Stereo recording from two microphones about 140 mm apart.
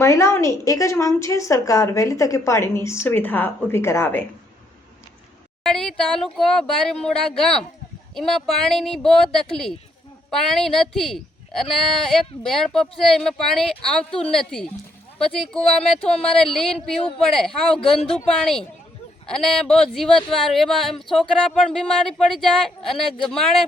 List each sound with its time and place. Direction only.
0.0 s a woman's voice: 20° left (ahead or behind)
5.6 s speech: 5° left (ahead or behind)
15.8 s speech: 5° left (ahead or behind)